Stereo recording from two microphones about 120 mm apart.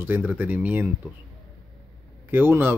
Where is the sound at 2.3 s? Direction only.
15° right (ahead or behind).